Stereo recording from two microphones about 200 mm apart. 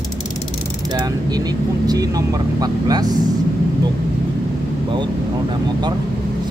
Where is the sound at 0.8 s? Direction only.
20° right (ahead or behind).